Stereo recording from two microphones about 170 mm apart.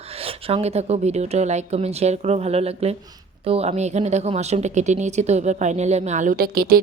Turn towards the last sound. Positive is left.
turn(degrees=-60)  # may be behind; listen again after turning